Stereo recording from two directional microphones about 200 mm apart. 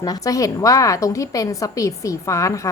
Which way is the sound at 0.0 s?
20° left (ahead or behind).